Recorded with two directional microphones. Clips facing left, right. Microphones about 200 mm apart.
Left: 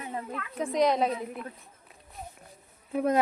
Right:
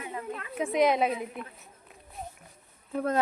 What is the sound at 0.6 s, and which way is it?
Speech, 5° right (ahead or behind).